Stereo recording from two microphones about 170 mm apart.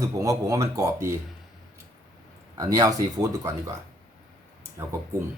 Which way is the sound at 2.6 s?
20° right (ahead or behind).